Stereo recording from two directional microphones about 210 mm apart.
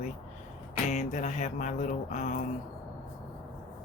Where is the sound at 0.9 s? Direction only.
35° left (ahead or behind).